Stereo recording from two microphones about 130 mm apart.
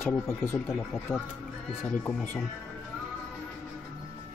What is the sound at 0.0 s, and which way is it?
Speech, 15° left (ahead or behind).